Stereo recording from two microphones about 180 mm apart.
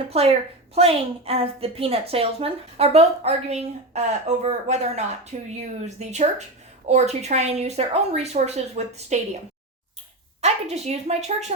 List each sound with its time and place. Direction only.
0.1 s a woman's voice: 35° right (ahead or behind)
10.4 s a woman's voice: 35° right (ahead or behind)